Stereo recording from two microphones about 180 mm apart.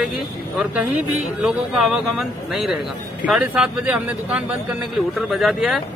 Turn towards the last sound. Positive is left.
turn(degrees=0)  # may be behind; listen again after turning